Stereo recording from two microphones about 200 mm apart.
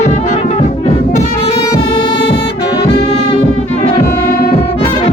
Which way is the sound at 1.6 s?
20° left (ahead or behind).